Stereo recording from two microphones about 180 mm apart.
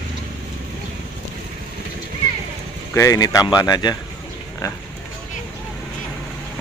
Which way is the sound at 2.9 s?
20° left (ahead or behind).